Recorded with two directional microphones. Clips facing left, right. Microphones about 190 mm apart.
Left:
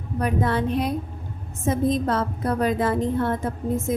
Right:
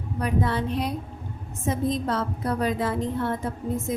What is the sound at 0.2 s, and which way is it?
A woman's voice, 50° left (ahead or behind).